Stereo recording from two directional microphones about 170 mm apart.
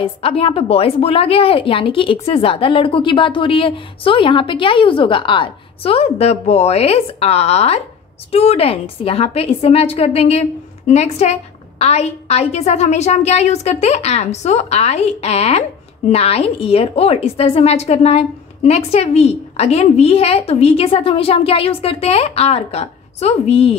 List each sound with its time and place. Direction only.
0.0 s a woman's voice: 35° left (ahead or behind)